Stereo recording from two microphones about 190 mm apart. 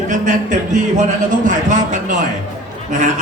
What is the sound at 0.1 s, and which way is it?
Speech, 40° right (ahead or behind).